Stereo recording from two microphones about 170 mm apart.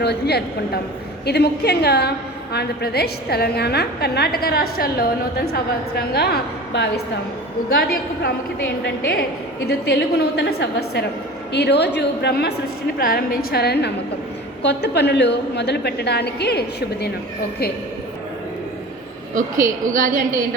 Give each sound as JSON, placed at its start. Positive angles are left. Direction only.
{"t": 0.0, "sound": "a woman's voice", "side_deg": 75}
{"t": 9.6, "sound": "a woman's voice", "side_deg": 75}
{"t": 13.0, "sound": "a woman's voice", "side_deg": 60}
{"t": 14.6, "sound": "a woman's voice", "side_deg": 90}
{"t": 19.3, "sound": "a woman's voice", "side_deg": -50}